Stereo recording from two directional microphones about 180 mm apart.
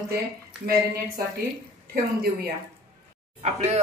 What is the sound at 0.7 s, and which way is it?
Speech, 60° right (ahead or behind).